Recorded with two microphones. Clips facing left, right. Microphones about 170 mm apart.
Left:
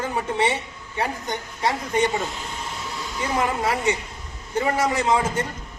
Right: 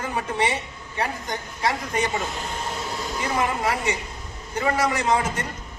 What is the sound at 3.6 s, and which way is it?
A man's voice, 30° left (ahead or behind).